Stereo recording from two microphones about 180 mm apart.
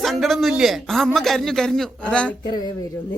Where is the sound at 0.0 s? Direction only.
Centre (ahead or behind).